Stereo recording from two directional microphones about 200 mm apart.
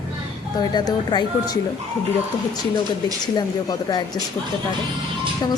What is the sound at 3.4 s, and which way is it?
Speech, 20° left (ahead or behind).